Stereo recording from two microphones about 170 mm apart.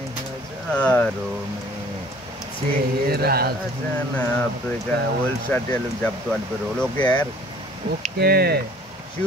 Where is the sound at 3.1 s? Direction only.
65° right (ahead or behind).